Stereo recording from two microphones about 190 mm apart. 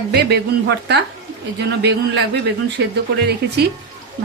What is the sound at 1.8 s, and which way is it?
Speech, 60° right (ahead or behind).